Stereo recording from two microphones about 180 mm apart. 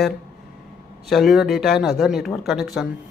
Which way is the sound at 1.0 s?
Centre (ahead or behind).